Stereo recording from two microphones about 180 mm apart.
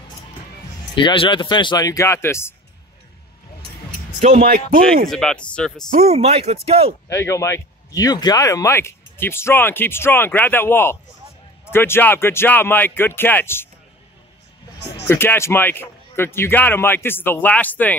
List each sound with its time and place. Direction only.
0.9 s speech: 30° left (ahead or behind)
4.2 s speech: 45° right (ahead or behind)
5.0 s speech: centre (ahead or behind)
5.9 s speech: 35° right (ahead or behind)
7.1 s speech: 15° left (ahead or behind)
15.0 s speech: 15° left (ahead or behind)